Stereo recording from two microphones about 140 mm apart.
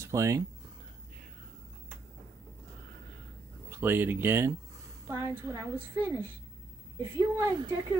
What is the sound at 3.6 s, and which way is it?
A woman's voice, 15° right (ahead or behind).